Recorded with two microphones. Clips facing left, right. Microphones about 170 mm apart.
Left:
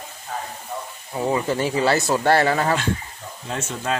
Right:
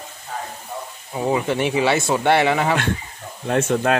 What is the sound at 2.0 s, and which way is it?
Speech, centre (ahead or behind).